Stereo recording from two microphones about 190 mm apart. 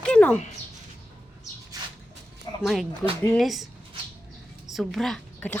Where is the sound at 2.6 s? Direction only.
Centre (ahead or behind).